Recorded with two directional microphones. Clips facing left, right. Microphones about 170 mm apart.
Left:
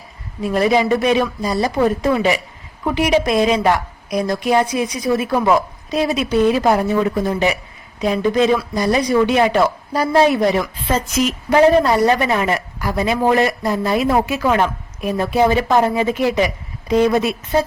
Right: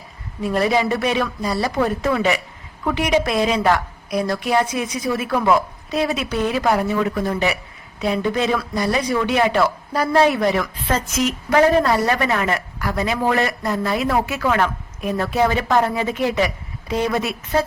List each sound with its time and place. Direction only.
0.4 s speech: 15° left (ahead or behind)
16.9 s speech: 25° left (ahead or behind)